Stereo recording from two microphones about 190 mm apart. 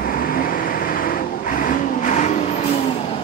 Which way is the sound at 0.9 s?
45° left (ahead or behind).